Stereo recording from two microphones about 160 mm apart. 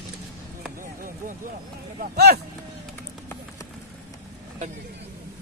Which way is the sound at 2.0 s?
80° right.